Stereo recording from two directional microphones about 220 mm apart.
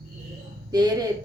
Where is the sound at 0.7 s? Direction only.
20° right (ahead or behind).